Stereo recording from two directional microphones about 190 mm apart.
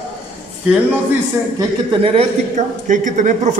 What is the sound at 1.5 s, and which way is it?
A man's voice, 25° right (ahead or behind).